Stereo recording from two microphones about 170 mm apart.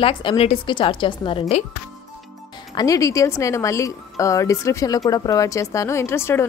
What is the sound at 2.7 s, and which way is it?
A woman's voice, 20° left (ahead or behind).